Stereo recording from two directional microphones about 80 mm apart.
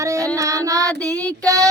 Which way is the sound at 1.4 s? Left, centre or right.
Right.